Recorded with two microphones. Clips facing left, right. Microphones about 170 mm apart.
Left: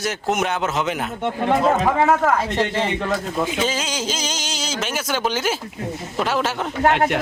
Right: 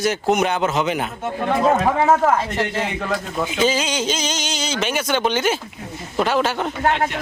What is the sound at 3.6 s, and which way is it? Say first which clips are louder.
A man's voice: right 4 dB; centre (ahead or behind).